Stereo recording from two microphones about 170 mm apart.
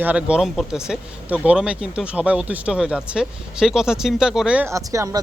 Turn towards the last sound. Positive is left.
turn(degrees=-20)  # may be behind; listen again after turning